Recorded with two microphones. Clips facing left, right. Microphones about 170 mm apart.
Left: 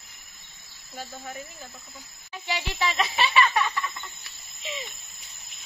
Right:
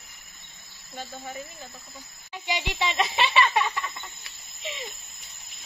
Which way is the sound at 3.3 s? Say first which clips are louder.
Left 1 dB; 20° right (ahead or behind).